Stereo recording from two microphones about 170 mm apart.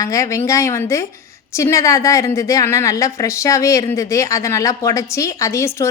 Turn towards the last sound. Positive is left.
turn(degrees=15)  # may be behind; listen again after turning